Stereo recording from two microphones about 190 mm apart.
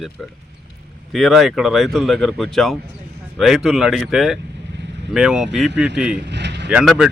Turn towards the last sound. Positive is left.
turn(degrees=-5)  # may be behind; listen again after turning